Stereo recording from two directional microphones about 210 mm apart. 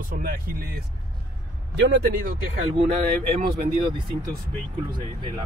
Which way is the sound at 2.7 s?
30° right (ahead or behind).